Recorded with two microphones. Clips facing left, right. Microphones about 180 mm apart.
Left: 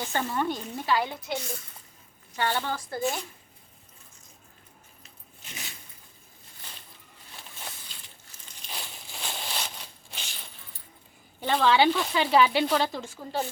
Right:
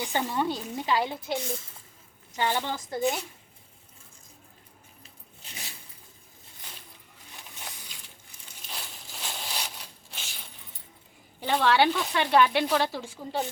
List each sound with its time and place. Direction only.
0.0 s a woman's voice: 15° right (ahead or behind)
1.0 s a woman's voice: 30° right (ahead or behind)
2.3 s a woman's voice: 15° right (ahead or behind)
7.3 s a sound: 15° right (ahead or behind)
11.3 s speech: 5° right (ahead or behind)
13.0 s a woman's voice: 15° right (ahead or behind)